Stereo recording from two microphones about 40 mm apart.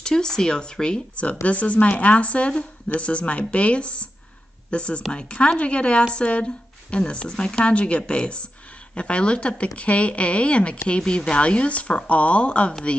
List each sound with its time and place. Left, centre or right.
0.0 s speech: centre
1.4 s speech: left